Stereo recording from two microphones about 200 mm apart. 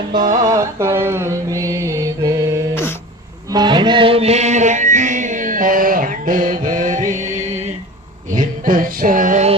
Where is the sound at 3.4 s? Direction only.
20° right (ahead or behind).